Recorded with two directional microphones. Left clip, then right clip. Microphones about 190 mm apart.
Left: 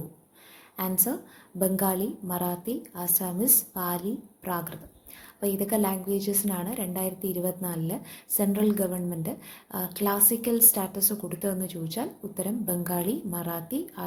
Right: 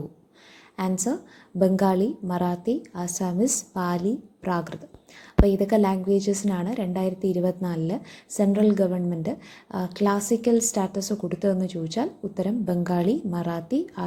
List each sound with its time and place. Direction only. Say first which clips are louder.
0.8 s a woman's voice: right 4 dB; 25° right (ahead or behind)